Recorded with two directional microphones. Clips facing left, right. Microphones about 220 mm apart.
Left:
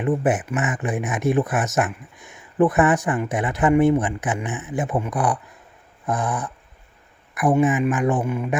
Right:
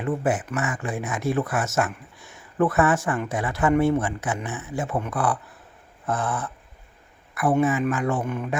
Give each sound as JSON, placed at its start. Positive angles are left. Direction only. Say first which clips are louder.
{"t": 0.0, "sound": "speech", "louder": "left 4 dB", "side_deg": 20}